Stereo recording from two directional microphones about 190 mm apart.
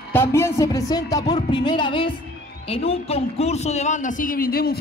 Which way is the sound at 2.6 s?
30° left (ahead or behind).